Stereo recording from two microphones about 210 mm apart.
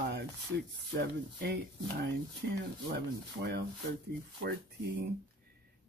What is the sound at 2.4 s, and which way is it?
Speech, 50° right (ahead or behind).